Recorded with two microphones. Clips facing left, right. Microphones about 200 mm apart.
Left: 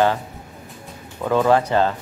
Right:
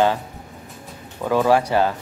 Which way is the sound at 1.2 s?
10° right (ahead or behind).